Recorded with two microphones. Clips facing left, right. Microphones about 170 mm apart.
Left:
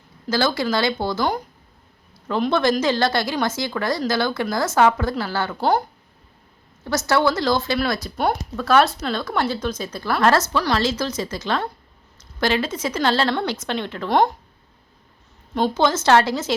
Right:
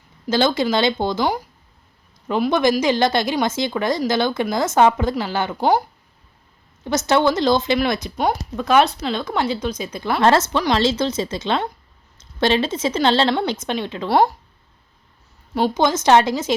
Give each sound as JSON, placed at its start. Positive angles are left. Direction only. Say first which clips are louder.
{"t": 0.3, "sound": "speech", "louder": "right 3 dB", "side_deg": -20}
{"t": 6.8, "sound": "speech", "louder": "right 2 dB", "side_deg": -20}
{"t": 15.5, "sound": "a woman's voice", "louder": "right 1 dB", "side_deg": -15}